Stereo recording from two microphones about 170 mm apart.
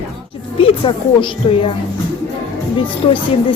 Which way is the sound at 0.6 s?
30° left (ahead or behind).